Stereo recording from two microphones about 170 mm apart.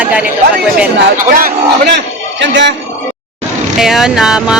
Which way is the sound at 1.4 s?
75° right (ahead or behind).